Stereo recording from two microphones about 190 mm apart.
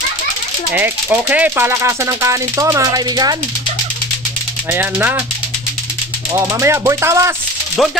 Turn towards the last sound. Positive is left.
turn(degrees=0)  # may be behind; listen again after turning